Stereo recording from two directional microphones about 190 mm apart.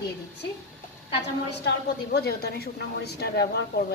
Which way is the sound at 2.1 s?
55° left (ahead or behind).